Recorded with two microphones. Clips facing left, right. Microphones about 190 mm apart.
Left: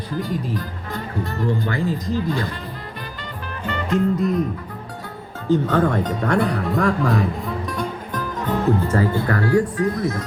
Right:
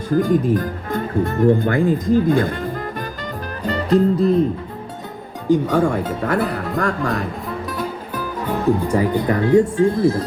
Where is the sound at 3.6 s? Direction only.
35° right (ahead or behind).